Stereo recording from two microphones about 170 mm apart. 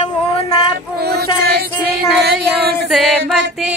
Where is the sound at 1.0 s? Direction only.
70° right (ahead or behind).